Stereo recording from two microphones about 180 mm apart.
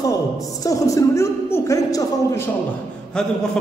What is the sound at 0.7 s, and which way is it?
A man's voice, 20° left (ahead or behind).